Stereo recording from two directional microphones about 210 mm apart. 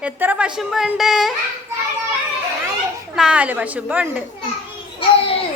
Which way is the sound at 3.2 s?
5° right (ahead or behind).